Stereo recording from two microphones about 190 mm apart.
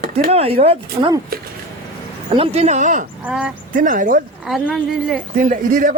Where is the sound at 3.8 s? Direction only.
45° right (ahead or behind).